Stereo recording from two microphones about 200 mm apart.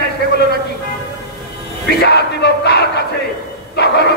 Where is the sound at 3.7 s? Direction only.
55° left (ahead or behind).